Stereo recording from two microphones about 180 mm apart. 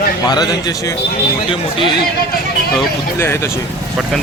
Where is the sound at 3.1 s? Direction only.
15° left (ahead or behind).